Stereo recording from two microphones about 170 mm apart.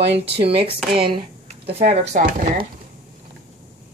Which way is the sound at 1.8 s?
45° right (ahead or behind).